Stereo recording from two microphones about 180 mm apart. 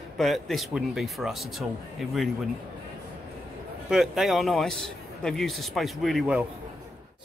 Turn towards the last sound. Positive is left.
turn(degrees=-5)  # may be behind; listen again after turning